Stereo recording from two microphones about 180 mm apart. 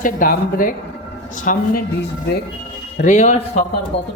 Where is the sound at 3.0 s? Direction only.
40° left (ahead or behind).